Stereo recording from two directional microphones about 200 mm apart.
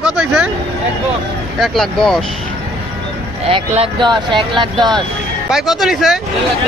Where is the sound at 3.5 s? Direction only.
25° right (ahead or behind).